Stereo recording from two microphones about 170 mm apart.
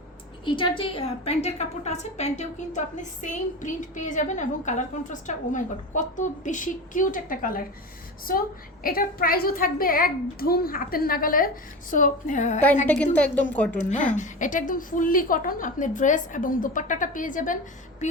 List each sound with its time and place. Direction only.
0.4 s a woman's voice: 30° left (ahead or behind); by 12.6 s 45° left (ahead or behind)
12.9 s a woman's voice: 10° left (ahead or behind)
14.2 s a woman's voice: 50° left (ahead or behind)